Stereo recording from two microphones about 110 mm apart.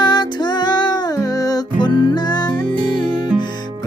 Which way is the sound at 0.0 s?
40° left (ahead or behind).